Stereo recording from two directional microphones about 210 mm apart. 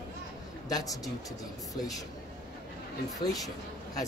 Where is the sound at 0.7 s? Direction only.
15° left (ahead or behind).